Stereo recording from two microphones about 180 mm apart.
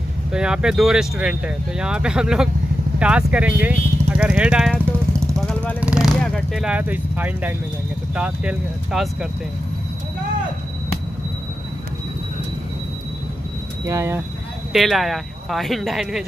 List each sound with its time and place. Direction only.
0.3 s speech: 5° right (ahead or behind)
5.5 s vehicle: 5° left (ahead or behind)
5.8 s speech: 5° right (ahead or behind)
13.8 s speech: 15° right (ahead or behind)
14.7 s speech: centre (ahead or behind)